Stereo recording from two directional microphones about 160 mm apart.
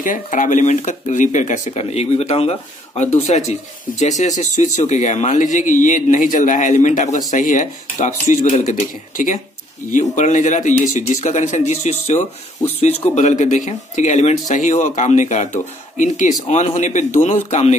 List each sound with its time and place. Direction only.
0.0 s speech: 55° left (ahead or behind)